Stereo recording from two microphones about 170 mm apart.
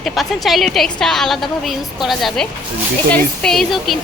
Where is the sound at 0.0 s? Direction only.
Centre (ahead or behind).